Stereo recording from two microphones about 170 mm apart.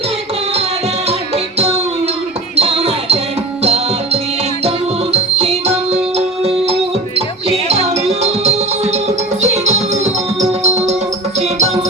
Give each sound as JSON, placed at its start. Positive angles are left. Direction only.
{"t": 1.5, "sound": "music", "side_deg": -35}